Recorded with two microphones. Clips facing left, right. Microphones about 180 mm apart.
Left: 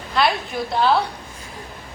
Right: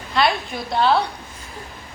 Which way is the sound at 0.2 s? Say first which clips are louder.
Even; 5° left (ahead or behind).